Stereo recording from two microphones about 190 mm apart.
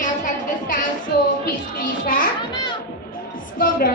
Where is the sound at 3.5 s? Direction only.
50° left (ahead or behind).